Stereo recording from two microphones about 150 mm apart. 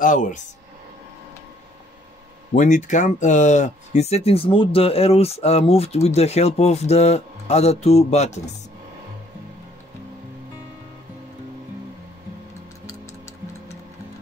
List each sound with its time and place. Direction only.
0.0 s speech: 55° left (ahead or behind)
2.5 s speech: 55° left (ahead or behind)